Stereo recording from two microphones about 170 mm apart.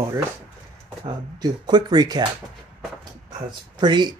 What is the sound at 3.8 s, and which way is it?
Speech, 25° right (ahead or behind).